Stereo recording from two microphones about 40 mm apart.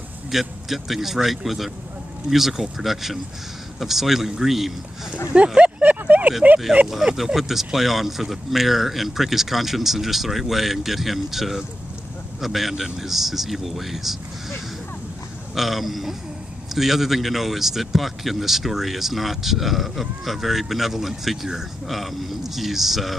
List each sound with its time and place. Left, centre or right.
0.3 s speech: centre
5.6 s a sound: right
6.0 s speech: right
6.7 s speech: right
7.3 s speech: centre
15.5 s speech: centre